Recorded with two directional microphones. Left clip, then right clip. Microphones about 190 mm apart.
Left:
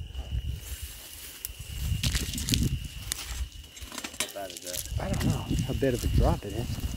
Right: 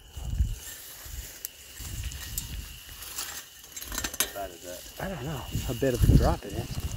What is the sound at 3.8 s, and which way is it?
Keys jangling, 35° right (ahead or behind).